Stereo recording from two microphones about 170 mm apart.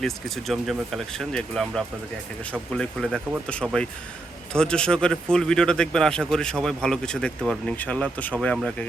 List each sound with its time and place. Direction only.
0.0 s a man's voice: centre (ahead or behind)